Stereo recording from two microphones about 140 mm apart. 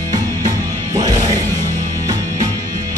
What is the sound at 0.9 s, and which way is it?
Music, 25° right (ahead or behind).